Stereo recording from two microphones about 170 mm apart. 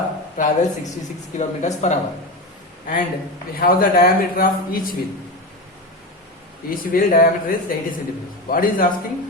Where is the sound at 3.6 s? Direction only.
55° left (ahead or behind).